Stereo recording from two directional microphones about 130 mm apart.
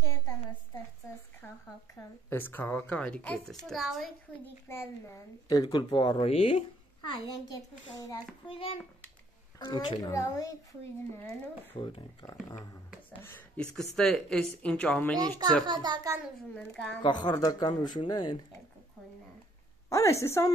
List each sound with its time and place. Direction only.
2.0 s a woman's voice: 15° left (ahead or behind); by 4.1 s centre (ahead or behind)
4.6 s a woman's voice: 20° left (ahead or behind); by 6.6 s 50° left (ahead or behind)
7.0 s a child's voice: 35° left (ahead or behind)
8.5 s speech: 45° left (ahead or behind)
9.6 s a child's voice: 35° left (ahead or behind)
11.7 s speech: 40° left (ahead or behind)
12.3 s a child's voice: 25° left (ahead or behind)
13.6 s a woman's voice: 5° left (ahead or behind)
15.1 s a child's voice: 30° right (ahead or behind)
16.5 s a woman's voice: 5° left (ahead or behind)
17.0 s a woman's voice: 35° left (ahead or behind)
19.9 s a child's voice: 25° left (ahead or behind)